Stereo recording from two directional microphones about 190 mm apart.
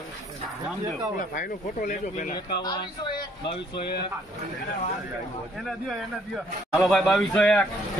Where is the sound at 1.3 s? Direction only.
45° left (ahead or behind).